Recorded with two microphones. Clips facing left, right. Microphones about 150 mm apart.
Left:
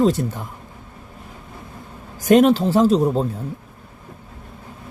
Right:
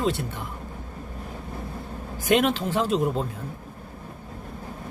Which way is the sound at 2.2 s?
40° left (ahead or behind).